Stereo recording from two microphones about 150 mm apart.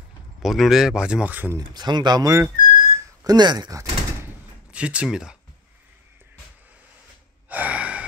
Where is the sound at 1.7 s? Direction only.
30° right (ahead or behind).